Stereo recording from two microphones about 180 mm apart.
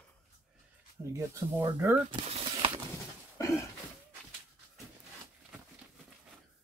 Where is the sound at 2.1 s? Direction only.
30° right (ahead or behind).